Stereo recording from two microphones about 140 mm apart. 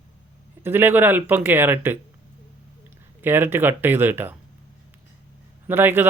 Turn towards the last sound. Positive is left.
turn(degrees=-15)  # may be behind; listen again after turning